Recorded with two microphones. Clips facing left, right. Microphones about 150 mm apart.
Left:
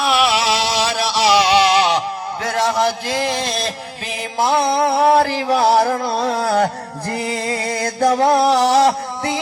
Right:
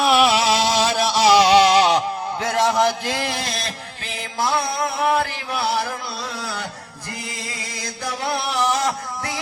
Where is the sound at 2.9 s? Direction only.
15° left (ahead or behind).